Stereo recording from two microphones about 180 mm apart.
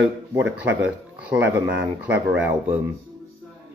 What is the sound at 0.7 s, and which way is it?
Speech, 10° right (ahead or behind).